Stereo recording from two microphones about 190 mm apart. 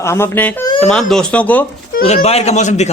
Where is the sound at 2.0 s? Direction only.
35° left (ahead or behind).